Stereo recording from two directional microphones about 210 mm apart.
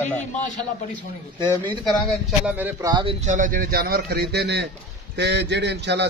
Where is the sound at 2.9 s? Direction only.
25° right (ahead or behind).